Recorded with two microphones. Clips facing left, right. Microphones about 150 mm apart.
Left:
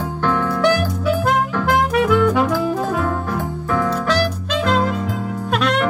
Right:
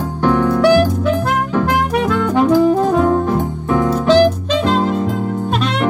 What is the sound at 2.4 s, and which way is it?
Saxophone, 15° right (ahead or behind).